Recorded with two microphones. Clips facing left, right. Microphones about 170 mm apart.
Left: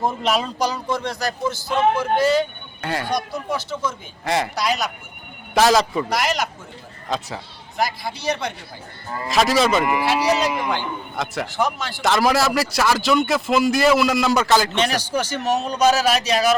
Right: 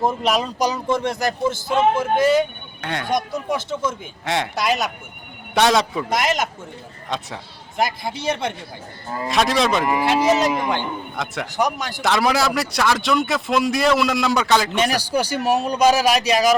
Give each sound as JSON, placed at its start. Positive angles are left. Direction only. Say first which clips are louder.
{"t": 0.0, "sound": "speech", "louder": "right 1 dB", "side_deg": -5}
{"t": 0.6, "sound": "speech", "louder": "right 3 dB", "side_deg": -20}
{"t": 2.8, "sound": "a man's voice", "louder": "left 2 dB", "side_deg": 0}
{"t": 3.1, "sound": "speech", "louder": "right 6 dB", "side_deg": -20}
{"t": 5.5, "sound": "a man's voice", "louder": "left 1 dB", "side_deg": 0}
{"t": 6.1, "sound": "speech", "louder": "right 1 dB", "side_deg": -20}
{"t": 7.1, "sound": "a man's voice", "louder": "left 2 dB", "side_deg": 0}
{"t": 8.1, "sound": "a man's voice", "louder": "right 1 dB", "side_deg": -50}
{"t": 9.2, "sound": "a man's voice", "louder": "left 1 dB", "side_deg": 0}
{"t": 10.0, "sound": "speech", "louder": "right 2 dB", "side_deg": -20}
{"t": 11.2, "sound": "a man's voice", "louder": "left 2 dB", "side_deg": 0}
{"t": 11.5, "sound": "speech", "louder": "right 3 dB", "side_deg": -15}
{"t": 12.0, "sound": "a man's voice", "louder": "left 1 dB", "side_deg": 0}